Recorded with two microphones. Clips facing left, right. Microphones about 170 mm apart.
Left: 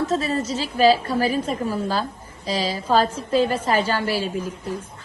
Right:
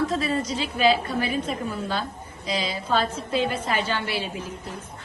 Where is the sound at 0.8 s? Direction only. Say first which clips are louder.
Left 5 dB; 35° left (ahead or behind).